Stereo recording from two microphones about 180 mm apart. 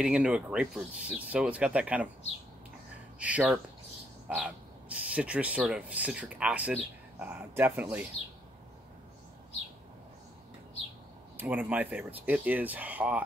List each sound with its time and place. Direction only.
0.0 s speech: 5° right (ahead or behind)
3.2 s speech: 5° right (ahead or behind)
11.3 s speech: 10° right (ahead or behind)